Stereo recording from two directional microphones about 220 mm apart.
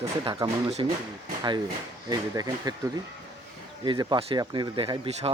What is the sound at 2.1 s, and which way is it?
Speech, 15° right (ahead or behind).